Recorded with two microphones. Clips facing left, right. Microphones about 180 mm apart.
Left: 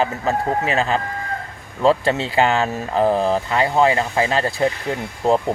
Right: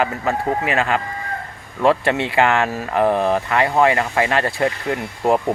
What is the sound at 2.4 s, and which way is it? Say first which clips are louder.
Speech: even; 25° left (ahead or behind).